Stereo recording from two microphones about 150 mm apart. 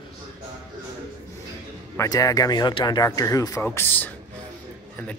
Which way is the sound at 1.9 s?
20° left (ahead or behind).